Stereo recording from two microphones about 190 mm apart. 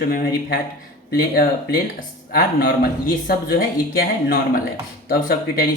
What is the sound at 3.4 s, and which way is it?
Speech, 50° left (ahead or behind).